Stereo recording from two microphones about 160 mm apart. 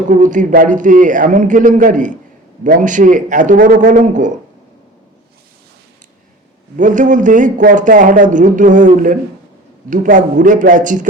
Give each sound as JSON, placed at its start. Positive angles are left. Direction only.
{"t": 0.1, "sound": "speech", "side_deg": -55}
{"t": 6.7, "sound": "speech", "side_deg": -50}